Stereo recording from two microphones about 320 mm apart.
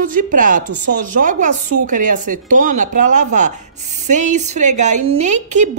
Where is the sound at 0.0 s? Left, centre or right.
Right.